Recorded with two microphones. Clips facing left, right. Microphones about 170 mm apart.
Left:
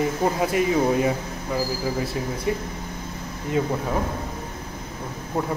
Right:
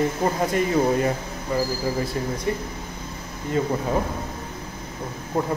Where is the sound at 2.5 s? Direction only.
5° left (ahead or behind).